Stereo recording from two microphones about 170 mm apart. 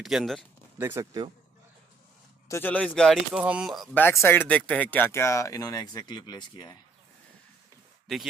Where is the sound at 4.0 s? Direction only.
15° left (ahead or behind).